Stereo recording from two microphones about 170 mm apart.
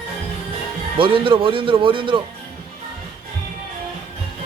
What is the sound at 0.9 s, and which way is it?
Speech, 30° right (ahead or behind).